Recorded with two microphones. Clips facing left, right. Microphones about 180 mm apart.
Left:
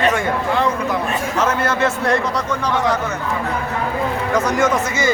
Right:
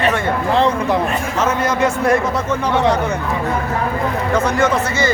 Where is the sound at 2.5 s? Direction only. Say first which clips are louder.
Right 4 dB; 25° right (ahead or behind).